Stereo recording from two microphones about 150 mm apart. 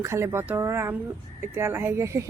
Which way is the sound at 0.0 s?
20° right (ahead or behind).